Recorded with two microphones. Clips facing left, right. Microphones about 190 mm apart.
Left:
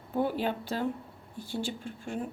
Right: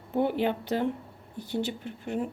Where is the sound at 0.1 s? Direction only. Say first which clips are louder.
Right 3 dB; 20° right (ahead or behind).